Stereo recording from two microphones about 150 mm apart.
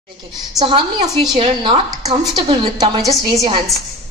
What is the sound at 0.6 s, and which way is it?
A woman's voice, 30° right (ahead or behind).